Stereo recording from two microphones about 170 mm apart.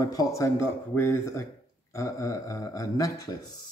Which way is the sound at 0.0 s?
20° left (ahead or behind).